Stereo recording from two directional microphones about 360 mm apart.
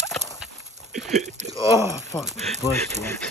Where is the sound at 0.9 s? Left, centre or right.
Centre.